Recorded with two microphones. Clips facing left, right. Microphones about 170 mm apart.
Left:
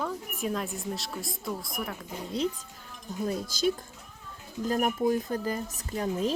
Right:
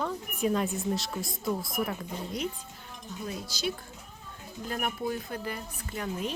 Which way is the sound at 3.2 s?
45° left (ahead or behind).